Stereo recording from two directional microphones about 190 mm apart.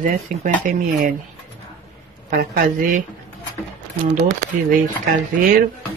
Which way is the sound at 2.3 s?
50° right (ahead or behind).